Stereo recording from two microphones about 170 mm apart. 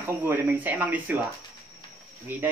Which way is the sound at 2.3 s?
10° right (ahead or behind).